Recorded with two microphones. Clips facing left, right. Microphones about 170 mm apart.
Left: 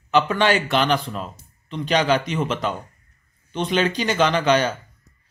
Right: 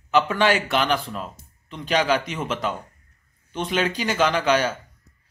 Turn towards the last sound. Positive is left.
turn(degrees=-5)  # may be behind; listen again after turning